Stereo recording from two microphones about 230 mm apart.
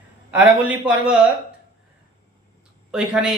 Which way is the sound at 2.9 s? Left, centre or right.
Centre.